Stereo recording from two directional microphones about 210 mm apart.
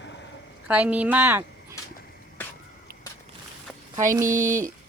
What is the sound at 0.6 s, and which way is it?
Speech, 5° right (ahead or behind).